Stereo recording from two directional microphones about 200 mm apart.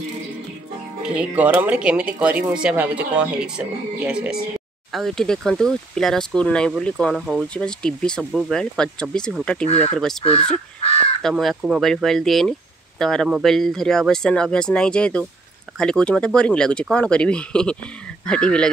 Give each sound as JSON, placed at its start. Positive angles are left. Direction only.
{"t": 1.0, "sound": "speech", "side_deg": -5}
{"t": 9.7, "sound": "speech", "side_deg": 30}
{"t": 9.9, "sound": "speech", "side_deg": 0}
{"t": 10.2, "sound": "speech", "side_deg": 30}
{"t": 11.2, "sound": "speech", "side_deg": 0}